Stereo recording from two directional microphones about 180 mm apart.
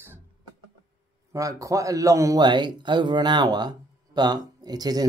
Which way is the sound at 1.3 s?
20° right (ahead or behind).